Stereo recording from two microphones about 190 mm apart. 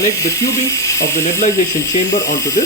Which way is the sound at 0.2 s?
15° left (ahead or behind).